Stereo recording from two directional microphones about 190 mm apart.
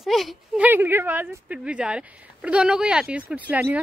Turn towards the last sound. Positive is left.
turn(degrees=-10)  # may be behind; listen again after turning